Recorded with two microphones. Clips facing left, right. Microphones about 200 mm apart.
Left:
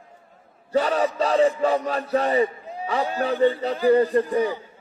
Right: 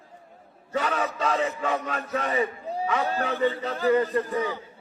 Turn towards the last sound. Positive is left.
turn(degrees=35)  # may be behind; listen again after turning